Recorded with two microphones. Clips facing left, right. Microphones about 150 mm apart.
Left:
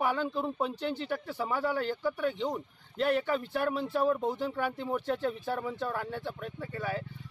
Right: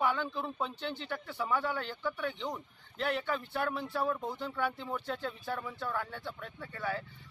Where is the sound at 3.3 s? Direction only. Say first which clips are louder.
Left 4 dB; 15° left (ahead or behind).